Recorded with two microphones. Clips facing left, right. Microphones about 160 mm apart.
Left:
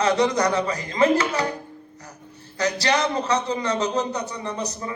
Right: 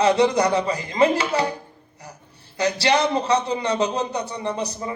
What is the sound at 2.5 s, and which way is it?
Speech, 30° right (ahead or behind).